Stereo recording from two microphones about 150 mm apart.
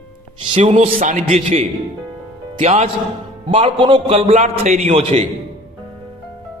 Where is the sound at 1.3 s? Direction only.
40° right (ahead or behind).